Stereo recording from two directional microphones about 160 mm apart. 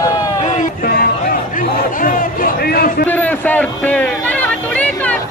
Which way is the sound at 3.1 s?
10° left (ahead or behind).